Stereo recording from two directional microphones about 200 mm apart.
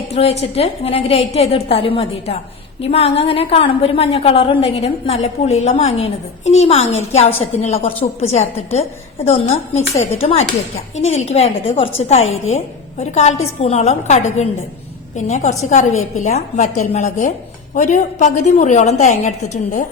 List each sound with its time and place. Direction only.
0.1 s a woman's voice: 30° left (ahead or behind)